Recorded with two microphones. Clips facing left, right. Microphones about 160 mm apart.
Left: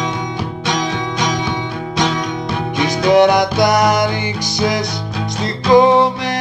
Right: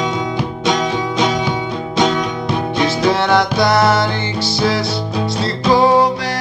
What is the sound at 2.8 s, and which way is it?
Music, 15° left (ahead or behind).